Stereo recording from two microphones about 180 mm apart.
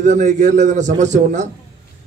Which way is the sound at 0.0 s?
40° right (ahead or behind).